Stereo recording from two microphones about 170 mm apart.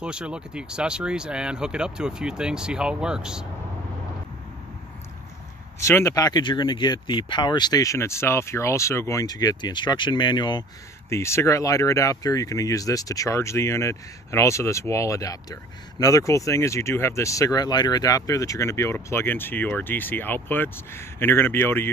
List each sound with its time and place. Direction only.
0.0 s speech: 5° right (ahead or behind)
5.8 s speech: 15° left (ahead or behind)